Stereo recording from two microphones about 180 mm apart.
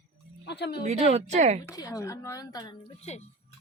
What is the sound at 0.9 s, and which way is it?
Speech, 35° right (ahead or behind).